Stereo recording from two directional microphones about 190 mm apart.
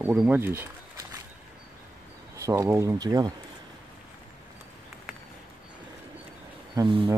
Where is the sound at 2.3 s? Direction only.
15° right (ahead or behind).